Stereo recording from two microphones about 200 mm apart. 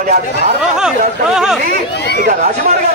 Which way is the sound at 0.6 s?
5° right (ahead or behind).